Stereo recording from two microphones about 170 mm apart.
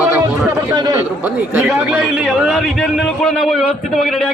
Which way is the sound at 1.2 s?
10° right (ahead or behind).